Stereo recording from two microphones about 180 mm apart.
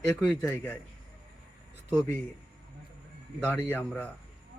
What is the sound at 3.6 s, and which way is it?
Speech, 10° left (ahead or behind).